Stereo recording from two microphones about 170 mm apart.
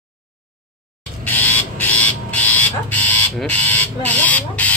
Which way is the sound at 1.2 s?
10° left (ahead or behind).